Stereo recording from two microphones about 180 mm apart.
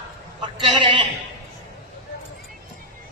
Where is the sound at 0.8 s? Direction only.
25° right (ahead or behind).